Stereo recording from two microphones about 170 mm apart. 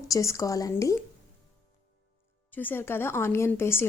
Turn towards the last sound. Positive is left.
turn(degrees=15)  # may be behind; listen again after turning